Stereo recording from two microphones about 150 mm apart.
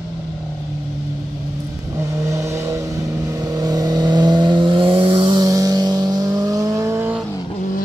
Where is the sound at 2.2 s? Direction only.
20° right (ahead or behind).